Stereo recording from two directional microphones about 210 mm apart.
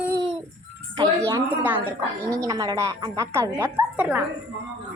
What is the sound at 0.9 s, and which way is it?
A woman's voice, 15° right (ahead or behind).